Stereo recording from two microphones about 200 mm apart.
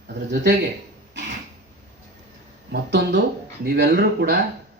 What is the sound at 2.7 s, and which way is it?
Speech, 60° right (ahead or behind).